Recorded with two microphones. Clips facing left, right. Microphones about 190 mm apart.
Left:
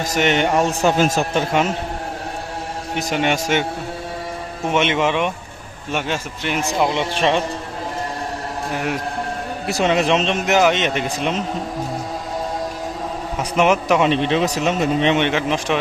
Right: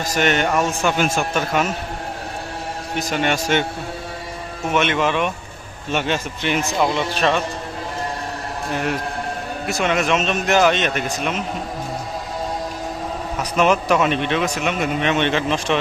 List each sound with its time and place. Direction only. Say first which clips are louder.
0.0 s speech: left 1 dB; 20° left (ahead or behind)
0.6 s a man's voice: left 3 dB; 35° left (ahead or behind)
2.9 s speech: left 1 dB; 20° left (ahead or behind)
4.7 s speech: left 1 dB; 20° left (ahead or behind)
5.9 s speech: right 2 dB; 5° left (ahead or behind)
6.9 s speech: left 1 dB; 25° left (ahead or behind)
8.7 s speech: right 1 dB; 10° left (ahead or behind)
9.6 s speech: left 3 dB; 30° left (ahead or behind)
13.6 s speech: left 1 dB; 20° left (ahead or behind)
15.2 s speech: even; 15° left (ahead or behind)